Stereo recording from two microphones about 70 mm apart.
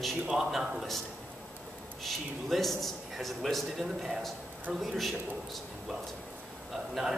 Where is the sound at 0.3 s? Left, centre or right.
Centre.